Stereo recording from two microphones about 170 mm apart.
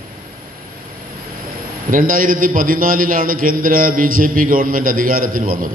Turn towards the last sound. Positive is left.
turn(degrees=-55)  # may be behind; listen again after turning